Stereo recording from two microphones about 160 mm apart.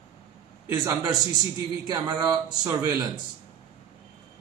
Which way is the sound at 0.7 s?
20° right (ahead or behind).